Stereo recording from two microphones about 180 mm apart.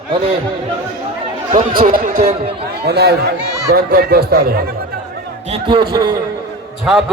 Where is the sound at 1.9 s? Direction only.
50° right (ahead or behind).